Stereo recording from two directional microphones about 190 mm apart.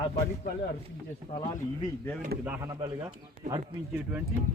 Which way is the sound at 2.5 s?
15° right (ahead or behind).